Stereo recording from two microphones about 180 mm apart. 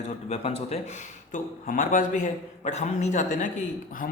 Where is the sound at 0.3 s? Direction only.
35° left (ahead or behind).